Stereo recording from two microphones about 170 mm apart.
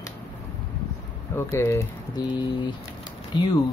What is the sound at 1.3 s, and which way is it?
Speech, 15° left (ahead or behind).